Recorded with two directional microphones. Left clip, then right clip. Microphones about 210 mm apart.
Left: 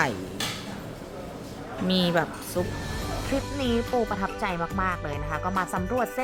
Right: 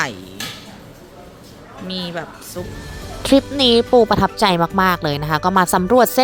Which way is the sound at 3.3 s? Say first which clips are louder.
Right 15 dB; 35° right (ahead or behind).